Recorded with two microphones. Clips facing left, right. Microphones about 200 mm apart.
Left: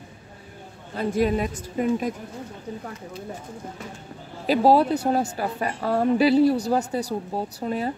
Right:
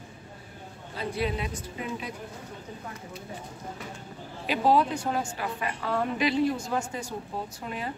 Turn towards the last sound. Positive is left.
turn(degrees=35)  # may be behind; listen again after turning